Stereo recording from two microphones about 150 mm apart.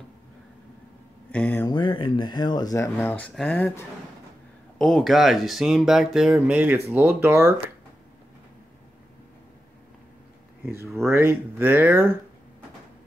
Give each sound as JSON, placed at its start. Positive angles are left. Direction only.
{"t": 1.3, "sound": "speech", "side_deg": 10}
{"t": 1.7, "sound": "speech", "side_deg": 30}
{"t": 10.6, "sound": "speech", "side_deg": -20}